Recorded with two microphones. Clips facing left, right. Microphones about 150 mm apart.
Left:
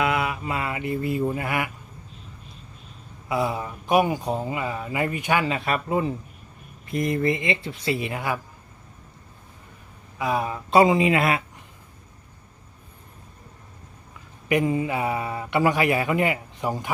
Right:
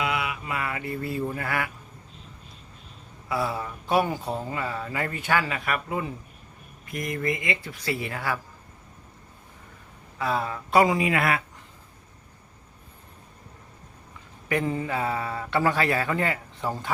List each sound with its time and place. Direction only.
0.0 s mantra: 45° left (ahead or behind)
0.4 s speech: 25° left (ahead or behind)
3.2 s speech: 20° left (ahead or behind)
10.2 s speech: 15° left (ahead or behind)
14.5 s speech: 10° left (ahead or behind)